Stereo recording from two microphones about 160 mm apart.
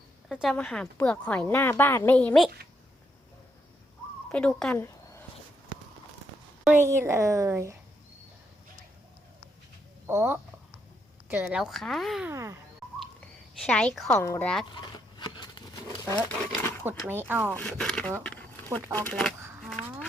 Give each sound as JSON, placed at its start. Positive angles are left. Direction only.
{"t": 0.4, "sound": "a woman's voice", "side_deg": 5}
{"t": 4.3, "sound": "a woman's voice", "side_deg": 5}
{"t": 6.8, "sound": "a woman's voice", "side_deg": -15}
{"t": 10.1, "sound": "a woman's voice", "side_deg": -15}
{"t": 12.3, "sound": "a child's voice", "side_deg": -20}
{"t": 13.6, "sound": "a woman's voice", "side_deg": 5}
{"t": 14.7, "sound": "goat", "side_deg": 25}
{"t": 16.1, "sound": "a woman's voice", "side_deg": 15}
{"t": 17.1, "sound": "a woman's voice", "side_deg": -10}
{"t": 17.5, "sound": "speech", "side_deg": 5}
{"t": 19.4, "sound": "a sound", "side_deg": -15}
{"t": 19.6, "sound": "crow", "side_deg": 5}